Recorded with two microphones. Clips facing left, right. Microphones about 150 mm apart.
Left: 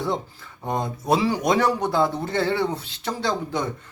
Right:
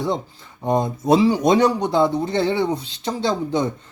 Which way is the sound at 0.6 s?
20° right (ahead or behind).